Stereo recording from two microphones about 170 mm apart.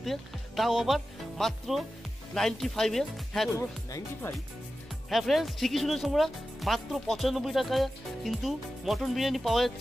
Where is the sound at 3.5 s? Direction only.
15° left (ahead or behind).